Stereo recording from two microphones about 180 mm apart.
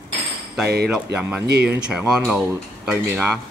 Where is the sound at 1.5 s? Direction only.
65° right (ahead or behind).